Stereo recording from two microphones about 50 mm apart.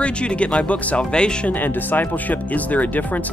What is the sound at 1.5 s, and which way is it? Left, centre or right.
Speech, left.